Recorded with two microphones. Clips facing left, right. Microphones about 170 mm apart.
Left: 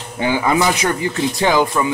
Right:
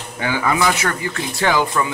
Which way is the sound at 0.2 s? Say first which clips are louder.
Left 3 dB; 20° left (ahead or behind).